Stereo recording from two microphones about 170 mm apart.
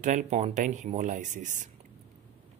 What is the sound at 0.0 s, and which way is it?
Speech, 45° right (ahead or behind).